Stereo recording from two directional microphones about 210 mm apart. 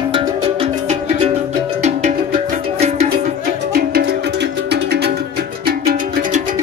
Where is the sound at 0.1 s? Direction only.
25° right (ahead or behind).